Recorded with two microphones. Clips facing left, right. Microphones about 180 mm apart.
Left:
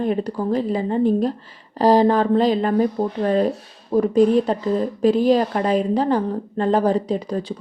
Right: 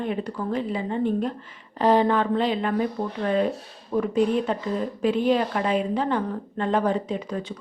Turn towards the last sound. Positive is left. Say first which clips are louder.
# left 6 dB
turn(degrees=35)  # may be behind; listen again after turning